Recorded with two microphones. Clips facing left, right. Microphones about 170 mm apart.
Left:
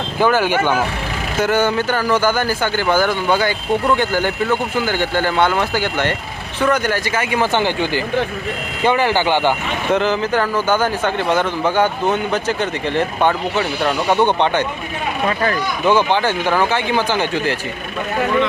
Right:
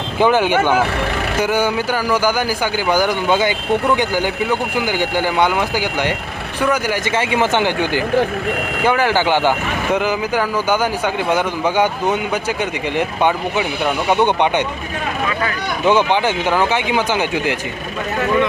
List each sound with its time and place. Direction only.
0.2 s speech: 15° right (ahead or behind)
7.2 s speech: 20° right (ahead or behind)
15.9 s speech: 15° right (ahead or behind)